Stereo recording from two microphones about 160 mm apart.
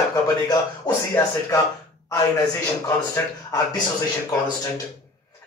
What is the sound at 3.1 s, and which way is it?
Speech, 20° left (ahead or behind).